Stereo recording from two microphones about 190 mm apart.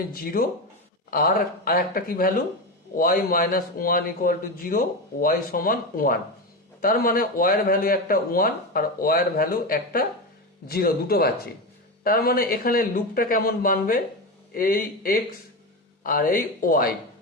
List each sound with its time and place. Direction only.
0.1 s a man's voice: 50° left (ahead or behind)